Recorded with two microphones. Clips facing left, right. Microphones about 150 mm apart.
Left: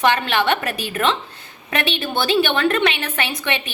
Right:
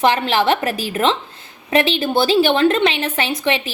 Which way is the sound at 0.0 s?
30° right (ahead or behind).